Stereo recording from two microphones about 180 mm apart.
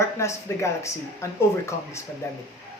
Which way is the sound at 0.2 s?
15° left (ahead or behind).